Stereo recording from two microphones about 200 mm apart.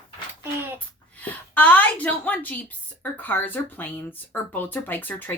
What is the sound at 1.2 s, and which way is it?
A woman's voice, 10° left (ahead or behind).